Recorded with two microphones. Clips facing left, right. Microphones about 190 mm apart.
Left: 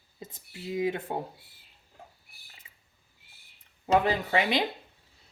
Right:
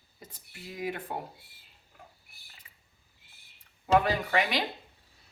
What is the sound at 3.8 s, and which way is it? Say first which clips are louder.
Speech: even; 25° left (ahead or behind).